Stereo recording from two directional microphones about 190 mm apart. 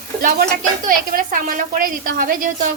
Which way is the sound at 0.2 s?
50° right (ahead or behind).